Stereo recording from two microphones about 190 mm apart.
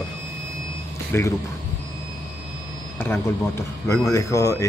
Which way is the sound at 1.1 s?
10° left (ahead or behind).